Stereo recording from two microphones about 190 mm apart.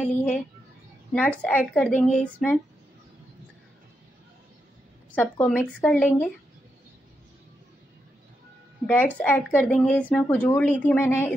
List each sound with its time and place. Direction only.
0.0 s speech: 5° left (ahead or behind)
5.1 s speech: 10° left (ahead or behind)
8.8 s speech: 5° left (ahead or behind)